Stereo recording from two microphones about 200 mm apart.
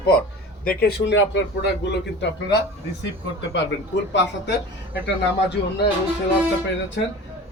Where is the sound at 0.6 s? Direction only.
50° left (ahead or behind).